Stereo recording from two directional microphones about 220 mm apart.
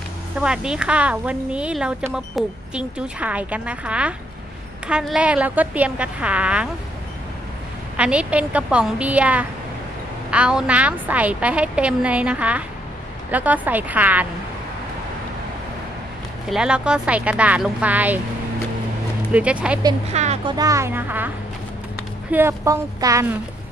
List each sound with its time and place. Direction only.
0.4 s a woman's voice: 5° right (ahead or behind)
8.0 s a woman's voice: 5° right (ahead or behind)
16.4 s a woman's voice: 5° right (ahead or behind)
19.3 s a woman's voice: 5° right (ahead or behind)
19.8 s speech: 20° right (ahead or behind)
20.2 s speech: 30° right (ahead or behind)
20.5 s speech: 15° right (ahead or behind)
22.3 s speech: 10° right (ahead or behind)